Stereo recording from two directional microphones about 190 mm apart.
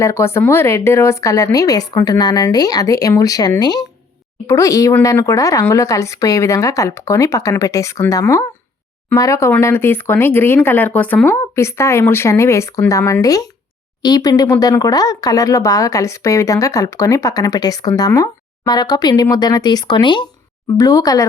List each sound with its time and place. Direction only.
0.0 s speech: 15° left (ahead or behind)